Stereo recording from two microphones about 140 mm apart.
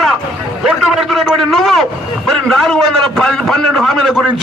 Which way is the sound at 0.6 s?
Centre (ahead or behind).